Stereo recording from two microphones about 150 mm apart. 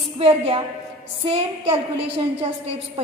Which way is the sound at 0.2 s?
40° right (ahead or behind).